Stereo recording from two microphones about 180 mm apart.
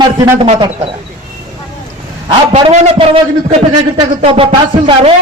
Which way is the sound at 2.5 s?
35° right (ahead or behind).